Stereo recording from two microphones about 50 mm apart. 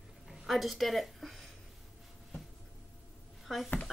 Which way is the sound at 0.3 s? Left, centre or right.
Centre.